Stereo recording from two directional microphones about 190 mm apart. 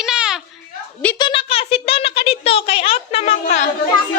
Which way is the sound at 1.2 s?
25° left (ahead or behind).